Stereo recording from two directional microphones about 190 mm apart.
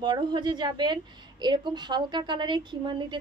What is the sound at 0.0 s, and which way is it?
A woman's voice, 25° right (ahead or behind).